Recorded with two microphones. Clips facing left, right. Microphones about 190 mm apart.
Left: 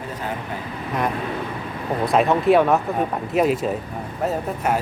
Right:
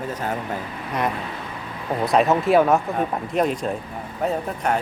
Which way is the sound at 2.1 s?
Centre (ahead or behind).